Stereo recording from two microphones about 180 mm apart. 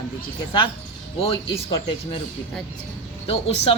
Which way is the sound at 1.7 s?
30° left (ahead or behind).